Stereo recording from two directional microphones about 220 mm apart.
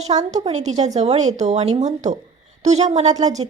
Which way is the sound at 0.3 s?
30° right (ahead or behind).